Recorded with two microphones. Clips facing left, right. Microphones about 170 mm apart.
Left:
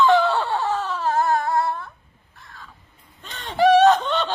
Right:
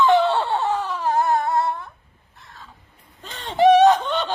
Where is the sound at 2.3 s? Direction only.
20° right (ahead or behind).